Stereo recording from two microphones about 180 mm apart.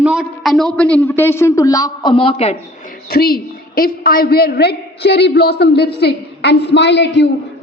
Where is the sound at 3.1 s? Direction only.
55° left (ahead or behind).